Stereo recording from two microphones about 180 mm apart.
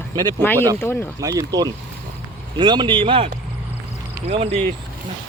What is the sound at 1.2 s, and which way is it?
Speech, 20° right (ahead or behind).